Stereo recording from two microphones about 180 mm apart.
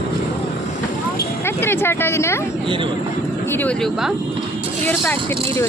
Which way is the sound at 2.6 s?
25° right (ahead or behind).